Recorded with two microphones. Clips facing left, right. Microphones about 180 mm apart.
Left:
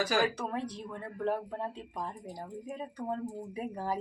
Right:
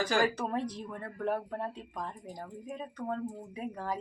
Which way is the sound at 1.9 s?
5° left (ahead or behind).